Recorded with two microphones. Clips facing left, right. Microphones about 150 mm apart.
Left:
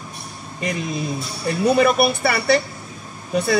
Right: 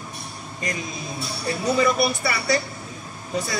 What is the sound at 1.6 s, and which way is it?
Speech, 60° left (ahead or behind).